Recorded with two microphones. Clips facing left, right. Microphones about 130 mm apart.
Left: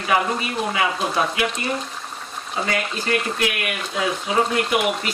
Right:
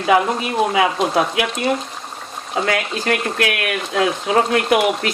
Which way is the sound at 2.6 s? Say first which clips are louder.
Right 4 dB; 85° right.